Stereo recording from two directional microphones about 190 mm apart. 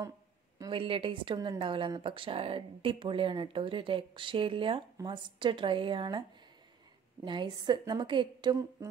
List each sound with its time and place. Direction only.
0.6 s speech: 25° right (ahead or behind)
7.2 s speech: 25° right (ahead or behind)